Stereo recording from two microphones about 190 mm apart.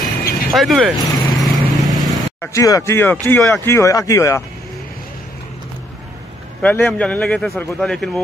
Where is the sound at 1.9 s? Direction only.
20° left (ahead or behind).